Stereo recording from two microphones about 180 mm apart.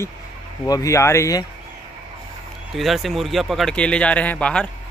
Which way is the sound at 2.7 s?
Centre (ahead or behind).